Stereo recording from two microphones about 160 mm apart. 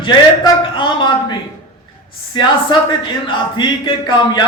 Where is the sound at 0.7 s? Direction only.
30° left (ahead or behind).